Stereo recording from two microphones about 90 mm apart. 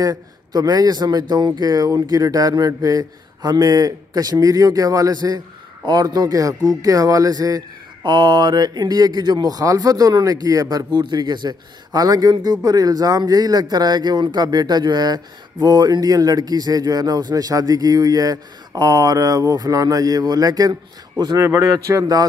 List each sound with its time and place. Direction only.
0.0 s speech: 40° right (ahead or behind)
8.0 s speech: 55° right (ahead or behind); by 22.2 s 40° right (ahead or behind)